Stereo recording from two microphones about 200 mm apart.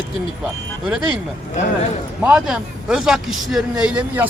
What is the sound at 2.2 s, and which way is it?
A man's voice, 5° right (ahead or behind).